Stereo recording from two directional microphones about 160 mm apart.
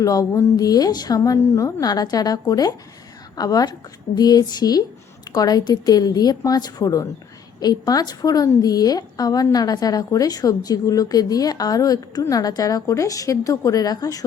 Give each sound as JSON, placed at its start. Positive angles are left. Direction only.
{"t": 0.0, "sound": "a woman's voice", "side_deg": 20}